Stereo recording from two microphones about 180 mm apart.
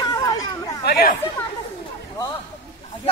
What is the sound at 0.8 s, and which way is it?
Speech, 60° left (ahead or behind).